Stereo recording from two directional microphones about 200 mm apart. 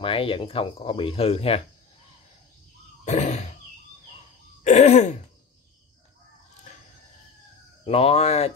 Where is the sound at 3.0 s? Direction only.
35° left (ahead or behind).